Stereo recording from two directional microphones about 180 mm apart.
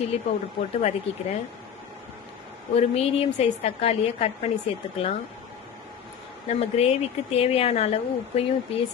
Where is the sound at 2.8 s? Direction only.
35° left (ahead or behind).